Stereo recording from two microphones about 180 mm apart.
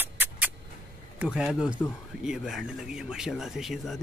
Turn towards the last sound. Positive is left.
turn(degrees=0)  # may be behind; listen again after turning